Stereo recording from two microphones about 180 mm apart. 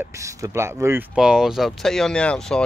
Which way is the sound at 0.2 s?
15° right (ahead or behind).